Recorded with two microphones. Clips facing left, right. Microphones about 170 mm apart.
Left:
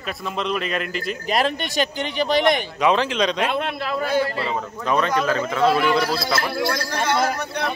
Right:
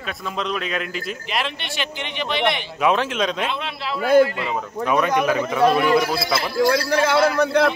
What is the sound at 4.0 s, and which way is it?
Speech, 50° right (ahead or behind).